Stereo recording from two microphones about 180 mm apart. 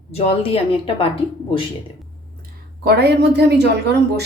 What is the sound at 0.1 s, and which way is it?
Speech, 35° left (ahead or behind).